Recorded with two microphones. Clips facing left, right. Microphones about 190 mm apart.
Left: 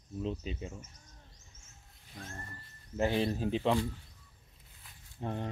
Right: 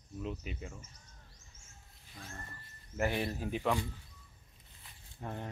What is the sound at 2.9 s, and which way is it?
Speech, 25° left (ahead or behind).